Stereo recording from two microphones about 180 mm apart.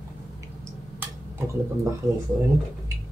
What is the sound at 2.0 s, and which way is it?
Speech, 20° right (ahead or behind).